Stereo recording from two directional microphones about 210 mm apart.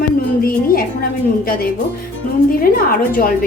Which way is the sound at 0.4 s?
45° left (ahead or behind).